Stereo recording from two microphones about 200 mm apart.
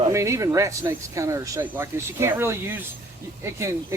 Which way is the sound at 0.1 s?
15° right (ahead or behind).